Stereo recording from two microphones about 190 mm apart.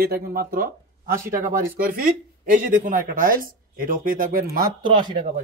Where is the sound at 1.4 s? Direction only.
50° right (ahead or behind).